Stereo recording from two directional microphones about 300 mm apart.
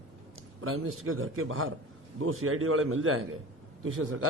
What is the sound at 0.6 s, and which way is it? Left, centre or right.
A man's voice, right.